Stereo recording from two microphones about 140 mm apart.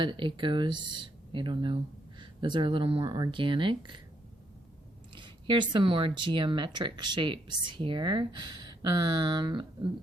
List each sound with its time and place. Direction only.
0.0 s speech: 35° right (ahead or behind)
5.1 s speech: 35° right (ahead or behind)